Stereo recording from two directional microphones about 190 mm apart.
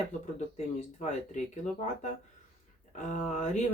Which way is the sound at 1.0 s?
40° left (ahead or behind).